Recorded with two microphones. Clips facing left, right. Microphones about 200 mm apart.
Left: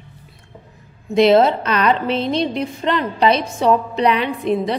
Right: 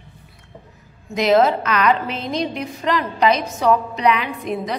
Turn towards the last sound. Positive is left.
turn(degrees=30)  # may be behind; listen again after turning